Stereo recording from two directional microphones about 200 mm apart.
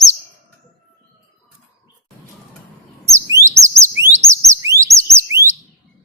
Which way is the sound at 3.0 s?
15° right (ahead or behind).